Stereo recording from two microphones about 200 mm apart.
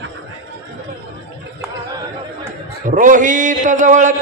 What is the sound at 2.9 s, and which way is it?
A man's voice, 40° right (ahead or behind).